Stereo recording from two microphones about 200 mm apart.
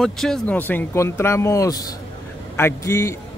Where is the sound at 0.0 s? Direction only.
Centre (ahead or behind).